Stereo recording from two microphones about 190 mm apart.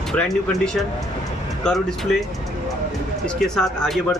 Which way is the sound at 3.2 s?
Centre (ahead or behind).